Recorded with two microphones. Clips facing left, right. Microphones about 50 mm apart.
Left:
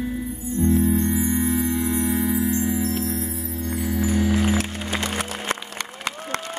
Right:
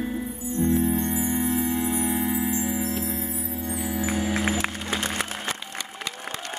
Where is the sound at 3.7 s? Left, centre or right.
Centre.